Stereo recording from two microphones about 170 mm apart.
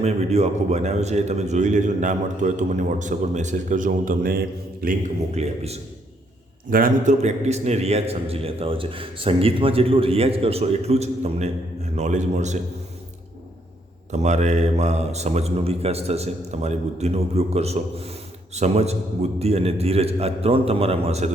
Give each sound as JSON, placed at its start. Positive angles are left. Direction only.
{"t": 0.0, "sound": "a man's voice", "side_deg": -40}
{"t": 5.3, "sound": "a man's voice", "side_deg": -40}
{"t": 6.7, "sound": "a man's voice", "side_deg": -55}
{"t": 14.1, "sound": "a man's voice", "side_deg": -45}